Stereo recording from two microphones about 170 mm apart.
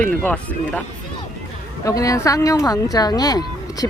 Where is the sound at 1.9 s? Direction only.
20° left (ahead or behind).